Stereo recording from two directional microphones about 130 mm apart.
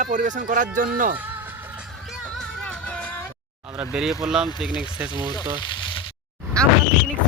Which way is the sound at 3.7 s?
5° right (ahead or behind).